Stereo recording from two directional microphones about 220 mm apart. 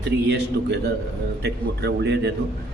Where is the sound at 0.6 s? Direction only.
50° right (ahead or behind).